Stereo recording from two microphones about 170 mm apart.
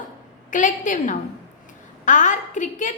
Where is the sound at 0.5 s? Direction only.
50° left (ahead or behind).